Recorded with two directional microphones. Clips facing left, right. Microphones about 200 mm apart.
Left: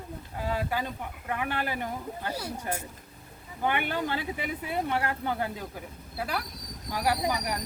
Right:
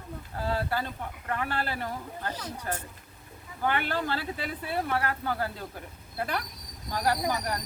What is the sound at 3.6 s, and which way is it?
Speech, 15° left (ahead or behind).